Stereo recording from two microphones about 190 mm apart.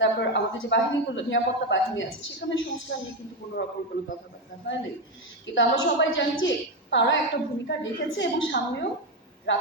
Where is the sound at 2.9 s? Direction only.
65° left (ahead or behind).